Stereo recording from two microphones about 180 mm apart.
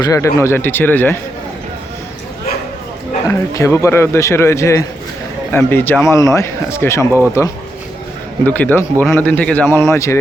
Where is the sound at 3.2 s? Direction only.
15° left (ahead or behind).